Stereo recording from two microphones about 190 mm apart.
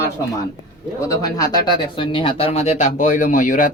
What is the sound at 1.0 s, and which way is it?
Speech, 20° left (ahead or behind).